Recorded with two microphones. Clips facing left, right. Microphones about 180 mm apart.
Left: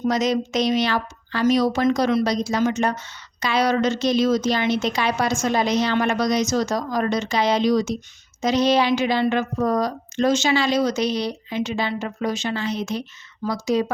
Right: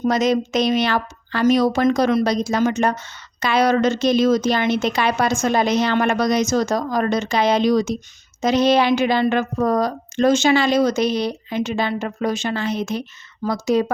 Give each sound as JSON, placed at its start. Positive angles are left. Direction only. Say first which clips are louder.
{"t": 0.1, "sound": "a woman's voice", "louder": "right 3 dB", "side_deg": -55}